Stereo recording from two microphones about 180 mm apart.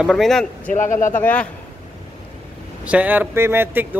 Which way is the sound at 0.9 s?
15° left (ahead or behind).